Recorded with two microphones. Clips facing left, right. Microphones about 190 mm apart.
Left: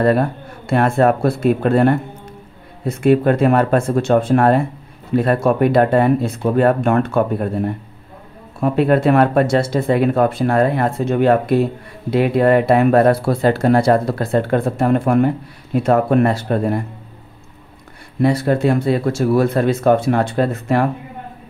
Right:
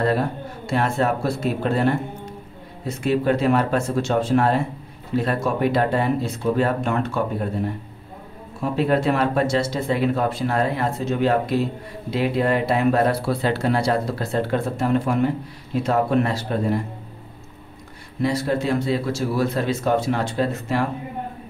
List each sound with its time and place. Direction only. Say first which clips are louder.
0.0 s speech: left 6 dB; 55° left (ahead or behind)
18.2 s speech: left 6 dB; 55° left (ahead or behind)